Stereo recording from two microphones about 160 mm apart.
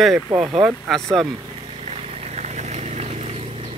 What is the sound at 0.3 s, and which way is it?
Speech, 35° right (ahead or behind).